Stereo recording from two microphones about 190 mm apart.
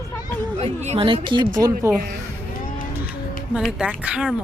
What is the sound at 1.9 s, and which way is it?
Speech, 15° right (ahead or behind).